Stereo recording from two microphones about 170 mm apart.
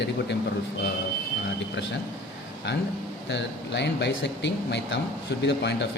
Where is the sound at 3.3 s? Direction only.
90° left.